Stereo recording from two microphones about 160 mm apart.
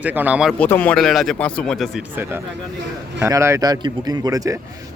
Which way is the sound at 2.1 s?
15° right (ahead or behind).